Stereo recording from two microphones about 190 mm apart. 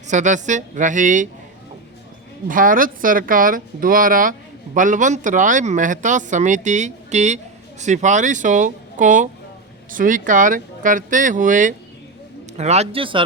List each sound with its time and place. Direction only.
0.1 s speech: 40° right (ahead or behind)
2.5 s speech: 45° right (ahead or behind); by 13.2 s 25° right (ahead or behind)